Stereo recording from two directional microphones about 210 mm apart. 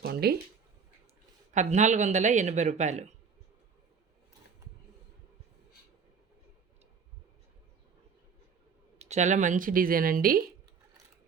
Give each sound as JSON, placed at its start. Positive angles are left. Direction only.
{"t": 0.0, "sound": "speech", "side_deg": -50}
{"t": 1.5, "sound": "speech", "side_deg": -35}
{"t": 9.0, "sound": "speech", "side_deg": -35}